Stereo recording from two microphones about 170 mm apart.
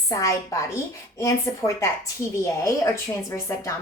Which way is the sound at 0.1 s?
20° left (ahead or behind).